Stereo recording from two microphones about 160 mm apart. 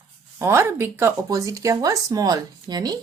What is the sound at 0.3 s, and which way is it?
Speech, 15° right (ahead or behind).